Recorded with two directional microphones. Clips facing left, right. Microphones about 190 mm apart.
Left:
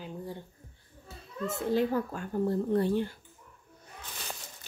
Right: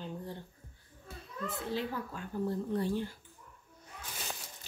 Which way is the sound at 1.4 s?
45° left (ahead or behind).